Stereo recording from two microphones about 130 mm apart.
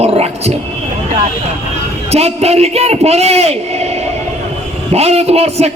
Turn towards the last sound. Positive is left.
turn(degrees=-55)  # may be behind; listen again after turning